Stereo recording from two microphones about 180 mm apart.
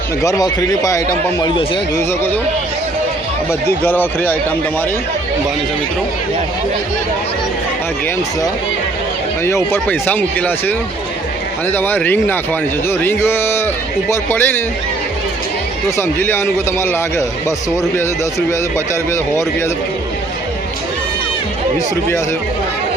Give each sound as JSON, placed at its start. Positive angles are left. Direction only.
{"t": 0.2, "sound": "a man's voice", "side_deg": 20}
{"t": 3.8, "sound": "speech", "side_deg": 10}
{"t": 9.4, "sound": "speech", "side_deg": 15}
{"t": 16.0, "sound": "speech", "side_deg": 10}